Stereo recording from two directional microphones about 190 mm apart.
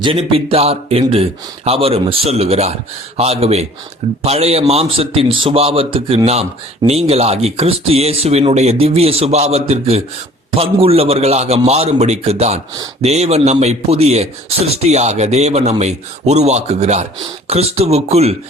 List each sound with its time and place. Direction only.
0.0 s speech: 30° right (ahead or behind)